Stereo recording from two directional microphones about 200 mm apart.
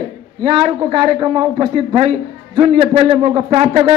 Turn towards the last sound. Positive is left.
turn(degrees=-30)  # may be behind; listen again after turning